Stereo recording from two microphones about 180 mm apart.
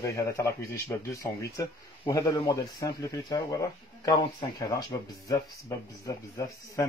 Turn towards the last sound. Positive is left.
turn(degrees=20)  # may be behind; listen again after turning